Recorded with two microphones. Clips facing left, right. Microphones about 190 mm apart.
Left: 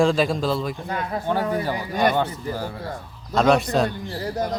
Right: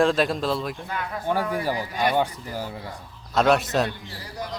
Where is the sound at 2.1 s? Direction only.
10° right (ahead or behind).